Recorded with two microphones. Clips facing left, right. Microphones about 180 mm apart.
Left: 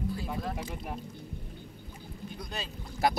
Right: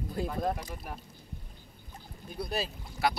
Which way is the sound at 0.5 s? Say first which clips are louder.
Left 3 dB; 10° left (ahead or behind).